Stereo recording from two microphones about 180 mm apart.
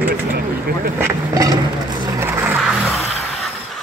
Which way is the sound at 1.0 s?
20° right (ahead or behind).